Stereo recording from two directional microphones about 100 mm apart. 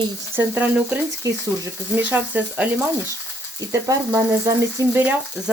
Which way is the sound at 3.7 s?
35° right (ahead or behind).